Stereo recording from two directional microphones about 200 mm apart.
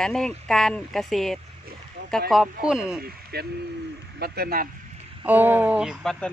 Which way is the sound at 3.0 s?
55° right (ahead or behind).